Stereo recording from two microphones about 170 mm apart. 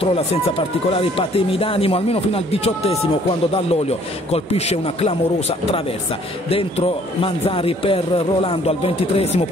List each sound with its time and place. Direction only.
0.0 s speech: 35° left (ahead or behind)